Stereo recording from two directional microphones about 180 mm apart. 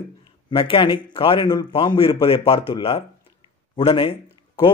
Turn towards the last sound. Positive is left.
turn(degrees=30)  # may be behind; listen again after turning